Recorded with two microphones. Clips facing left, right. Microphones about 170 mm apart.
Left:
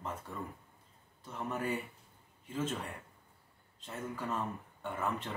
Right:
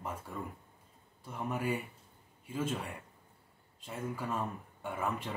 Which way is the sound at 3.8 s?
10° right (ahead or behind).